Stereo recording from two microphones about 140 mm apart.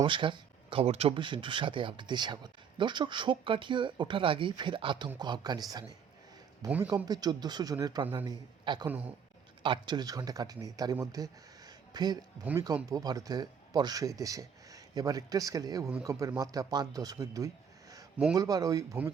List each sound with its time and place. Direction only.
0.0 s speech: 35° right (ahead or behind)
6.7 s speech: 10° right (ahead or behind)
6.9 s a man's voice: 30° right (ahead or behind)
8.9 s speech: 10° right (ahead or behind)
9.6 s a man's voice: 35° right (ahead or behind)